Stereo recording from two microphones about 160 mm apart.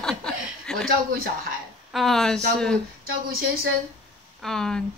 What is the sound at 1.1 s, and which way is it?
Speech, 65° right (ahead or behind).